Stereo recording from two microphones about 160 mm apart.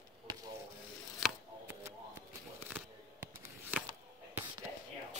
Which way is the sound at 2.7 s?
15° right (ahead or behind).